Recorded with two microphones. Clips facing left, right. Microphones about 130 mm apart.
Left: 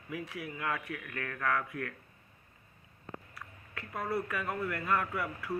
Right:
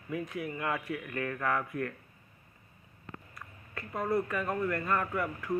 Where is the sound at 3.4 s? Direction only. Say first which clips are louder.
Right 2 dB; centre (ahead or behind).